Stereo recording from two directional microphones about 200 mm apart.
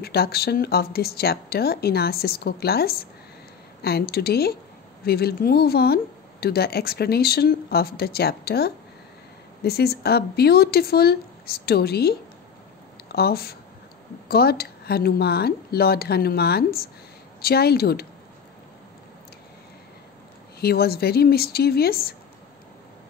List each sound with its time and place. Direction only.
0.0 s speech: 50° left (ahead or behind)
20.6 s speech: 50° left (ahead or behind)